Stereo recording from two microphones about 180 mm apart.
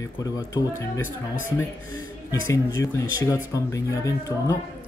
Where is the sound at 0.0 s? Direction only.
20° left (ahead or behind).